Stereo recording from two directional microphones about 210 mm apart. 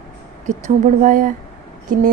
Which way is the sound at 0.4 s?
35° right (ahead or behind).